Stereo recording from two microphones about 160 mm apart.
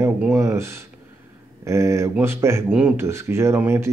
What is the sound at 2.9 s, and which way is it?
Speech, 15° right (ahead or behind).